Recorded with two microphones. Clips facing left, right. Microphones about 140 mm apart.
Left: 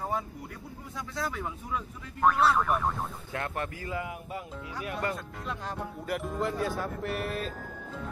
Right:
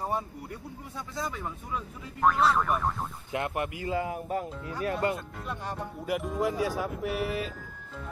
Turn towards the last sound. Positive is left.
turn(degrees=-10)  # may be behind; listen again after turning